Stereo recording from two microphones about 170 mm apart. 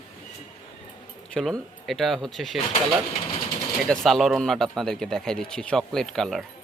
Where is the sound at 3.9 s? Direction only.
Centre (ahead or behind).